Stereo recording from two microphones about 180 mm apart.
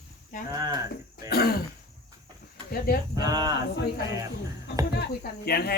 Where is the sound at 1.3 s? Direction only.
60° left (ahead or behind).